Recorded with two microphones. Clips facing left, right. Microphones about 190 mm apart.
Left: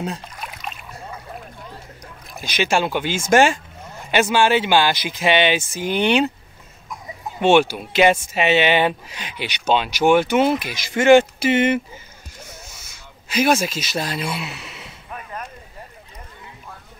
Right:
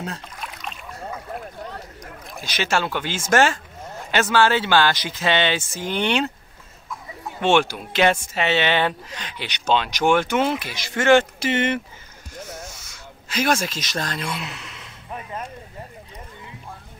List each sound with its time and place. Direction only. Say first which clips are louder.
0.0 s rowboat: left 4 dB; 10° left (ahead or behind)
2.4 s speech: left 3 dB; 15° left (ahead or behind)
13.3 s speech: left 4 dB; 10° left (ahead or behind)
15.0 s a sound: right 2 dB; 25° right (ahead or behind)